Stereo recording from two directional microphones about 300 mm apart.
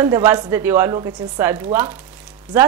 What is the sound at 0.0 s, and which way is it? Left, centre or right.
Speech, centre.